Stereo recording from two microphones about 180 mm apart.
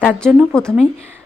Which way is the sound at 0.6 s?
5° left (ahead or behind).